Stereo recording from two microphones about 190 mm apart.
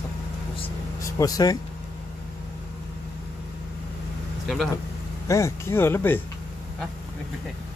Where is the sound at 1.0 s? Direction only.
20° left (ahead or behind).